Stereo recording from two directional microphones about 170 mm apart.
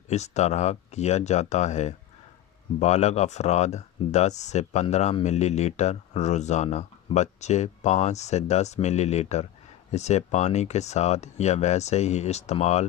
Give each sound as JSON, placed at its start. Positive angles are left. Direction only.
{"t": 0.1, "sound": "speech", "side_deg": 40}